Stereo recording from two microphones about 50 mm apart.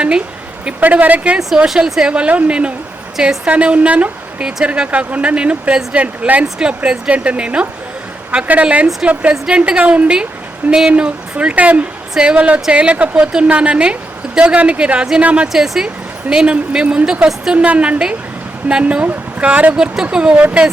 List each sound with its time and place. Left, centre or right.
0.8 s a woman's voice: right
1.5 s speech: centre; by 6.4 s right
6.4 s speech: centre
10.9 s speech: right
15.2 s speech: right
15.5 s speech: centre; by 19.7 s right
19.7 s speech: centre